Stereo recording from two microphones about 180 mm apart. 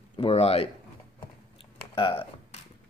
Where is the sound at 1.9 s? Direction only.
30° left (ahead or behind).